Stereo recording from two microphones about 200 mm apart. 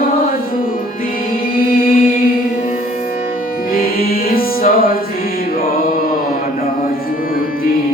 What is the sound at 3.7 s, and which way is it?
Music, 45° left (ahead or behind).